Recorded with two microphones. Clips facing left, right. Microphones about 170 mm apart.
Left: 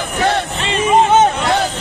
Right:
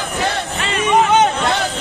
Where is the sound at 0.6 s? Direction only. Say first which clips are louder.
Left 1 dB; 25° left (ahead or behind).